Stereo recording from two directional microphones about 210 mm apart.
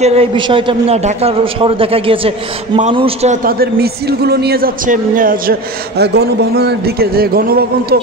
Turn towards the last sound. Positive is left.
turn(degrees=-45)  # may be behind; listen again after turning